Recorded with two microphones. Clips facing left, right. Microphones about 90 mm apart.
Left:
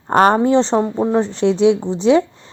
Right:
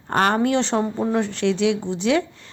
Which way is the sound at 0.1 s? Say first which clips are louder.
Left 6 dB; 30° left (ahead or behind).